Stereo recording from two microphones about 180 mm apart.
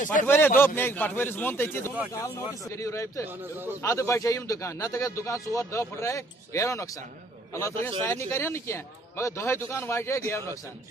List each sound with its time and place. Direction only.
0.0 s a man's voice: 45° left (ahead or behind)
0.6 s a man's voice: 10° left (ahead or behind)
3.3 s a man's voice: 10° right (ahead or behind)
3.8 s a man's voice: 15° left (ahead or behind)